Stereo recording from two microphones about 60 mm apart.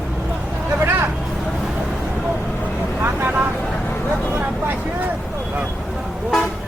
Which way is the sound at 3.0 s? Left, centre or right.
Right.